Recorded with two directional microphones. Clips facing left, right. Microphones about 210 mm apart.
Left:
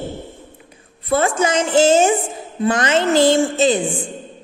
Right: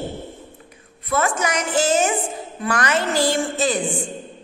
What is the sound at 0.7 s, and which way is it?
A woman's voice, 30° left (ahead or behind).